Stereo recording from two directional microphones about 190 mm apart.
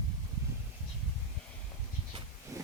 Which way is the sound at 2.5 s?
15° right (ahead or behind).